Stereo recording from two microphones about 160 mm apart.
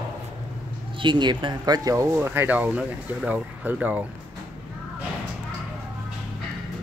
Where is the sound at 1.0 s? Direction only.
30° right (ahead or behind); by 4.0 s 10° right (ahead or behind).